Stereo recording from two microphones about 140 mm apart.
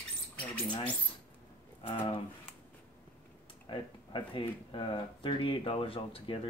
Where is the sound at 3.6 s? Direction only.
35° left (ahead or behind).